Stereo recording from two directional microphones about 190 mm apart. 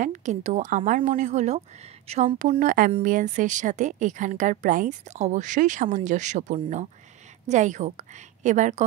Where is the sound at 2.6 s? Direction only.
45° right (ahead or behind).